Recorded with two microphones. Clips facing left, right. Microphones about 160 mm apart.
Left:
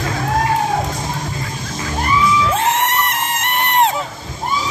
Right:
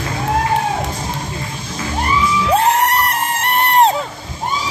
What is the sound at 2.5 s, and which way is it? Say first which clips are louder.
Music: right 3 dB; 35° right (ahead or behind).